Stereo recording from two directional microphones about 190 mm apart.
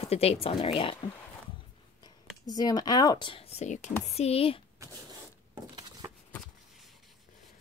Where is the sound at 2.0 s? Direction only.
20° left (ahead or behind).